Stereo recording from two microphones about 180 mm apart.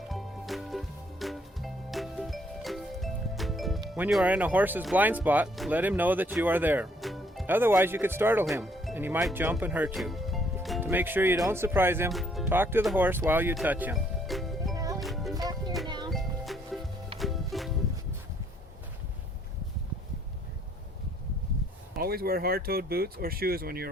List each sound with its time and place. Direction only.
0.1 s music: centre (ahead or behind)
3.8 s speech: 5° right (ahead or behind)
7.0 s music: centre (ahead or behind)
7.4 s speech: 10° right (ahead or behind)
8.6 s music: centre (ahead or behind)
9.0 s speech: 10° right (ahead or behind)
10.8 s speech: 10° right (ahead or behind)
12.1 s music: centre (ahead or behind)
12.5 s speech: 10° right (ahead or behind)
14.8 s music: 20° right (ahead or behind)
15.0 s music: centre (ahead or behind)
15.4 s music: 20° right (ahead or behind)
16.0 s music: centre (ahead or behind)
21.9 s speech: 55° right (ahead or behind)